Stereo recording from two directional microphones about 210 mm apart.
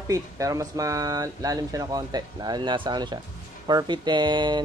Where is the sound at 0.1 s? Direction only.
15° right (ahead or behind).